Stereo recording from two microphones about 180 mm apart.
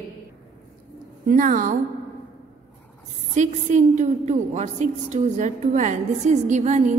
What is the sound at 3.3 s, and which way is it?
A woman's voice, 40° right (ahead or behind).